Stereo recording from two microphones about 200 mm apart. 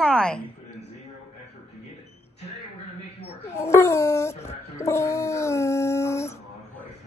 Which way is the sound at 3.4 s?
15° left (ahead or behind).